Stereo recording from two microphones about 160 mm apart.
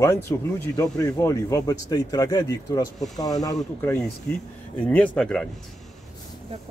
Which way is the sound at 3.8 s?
10° left (ahead or behind).